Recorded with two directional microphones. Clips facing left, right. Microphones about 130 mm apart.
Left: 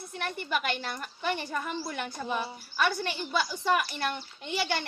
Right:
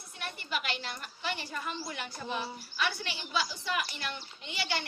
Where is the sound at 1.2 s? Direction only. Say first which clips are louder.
Left 5 dB; 50° left (ahead or behind).